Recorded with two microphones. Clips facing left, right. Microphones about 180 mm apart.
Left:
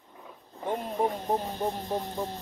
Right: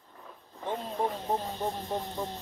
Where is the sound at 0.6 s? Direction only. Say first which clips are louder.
Left 3 dB; 10° left (ahead or behind).